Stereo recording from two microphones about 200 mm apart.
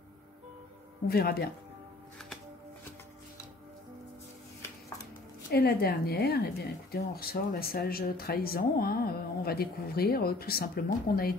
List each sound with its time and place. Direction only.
1.0 s speech: 50° left (ahead or behind)
5.5 s speech: 50° left (ahead or behind)